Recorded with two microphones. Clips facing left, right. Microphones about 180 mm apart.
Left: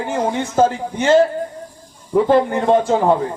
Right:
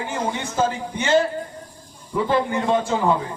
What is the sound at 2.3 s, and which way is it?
Speech, 45° left (ahead or behind).